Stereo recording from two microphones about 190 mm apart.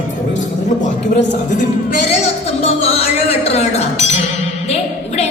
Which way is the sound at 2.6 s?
30° left (ahead or behind).